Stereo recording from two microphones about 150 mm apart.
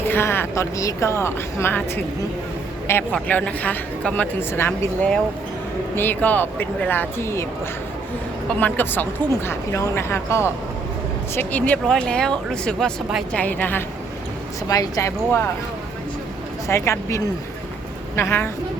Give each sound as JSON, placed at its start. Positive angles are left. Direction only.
{"t": 0.0, "sound": "speech", "side_deg": 15}
{"t": 8.4, "sound": "speech", "side_deg": 10}
{"t": 14.7, "sound": "speech", "side_deg": 25}
{"t": 16.6, "sound": "speech", "side_deg": 20}